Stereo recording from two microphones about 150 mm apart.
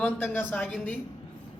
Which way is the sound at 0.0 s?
10° left (ahead or behind).